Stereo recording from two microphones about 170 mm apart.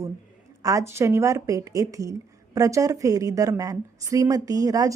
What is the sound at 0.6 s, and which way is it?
A woman's voice, 20° right (ahead or behind).